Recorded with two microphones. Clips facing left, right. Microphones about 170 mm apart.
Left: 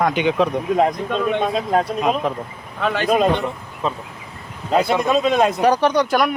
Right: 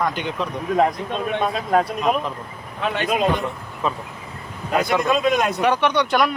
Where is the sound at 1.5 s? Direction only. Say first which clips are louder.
Left 1 dB; 35° left (ahead or behind).